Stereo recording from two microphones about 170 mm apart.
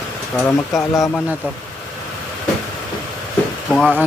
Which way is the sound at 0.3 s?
10° left (ahead or behind).